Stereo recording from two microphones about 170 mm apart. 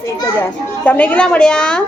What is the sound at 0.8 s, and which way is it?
A woman's voice, 10° left (ahead or behind).